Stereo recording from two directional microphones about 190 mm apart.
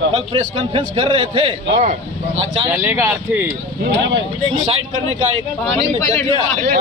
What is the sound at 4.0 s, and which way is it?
Speech, 70° right (ahead or behind).